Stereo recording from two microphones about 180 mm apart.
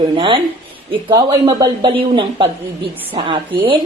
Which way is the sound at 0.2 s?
25° right (ahead or behind).